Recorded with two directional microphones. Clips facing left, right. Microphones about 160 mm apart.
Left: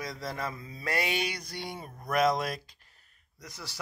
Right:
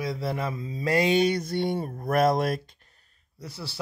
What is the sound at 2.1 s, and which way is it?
Speech, 55° right (ahead or behind).